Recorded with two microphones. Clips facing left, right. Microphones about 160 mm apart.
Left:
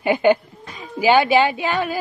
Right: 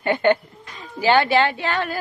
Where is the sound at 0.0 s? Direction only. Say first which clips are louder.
Left 2 dB; 10° left (ahead or behind).